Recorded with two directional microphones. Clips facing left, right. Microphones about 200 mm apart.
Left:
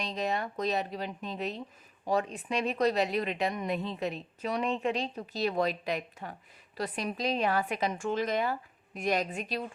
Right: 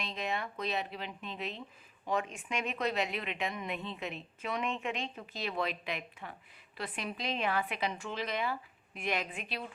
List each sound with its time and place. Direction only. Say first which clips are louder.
0.0 s a woman's voice: left 5 dB; 40° left (ahead or behind)